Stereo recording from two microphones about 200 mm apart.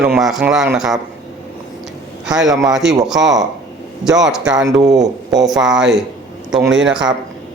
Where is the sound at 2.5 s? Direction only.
15° right (ahead or behind).